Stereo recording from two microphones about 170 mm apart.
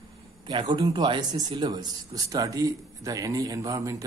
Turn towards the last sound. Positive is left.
turn(degrees=-20)  # may be behind; listen again after turning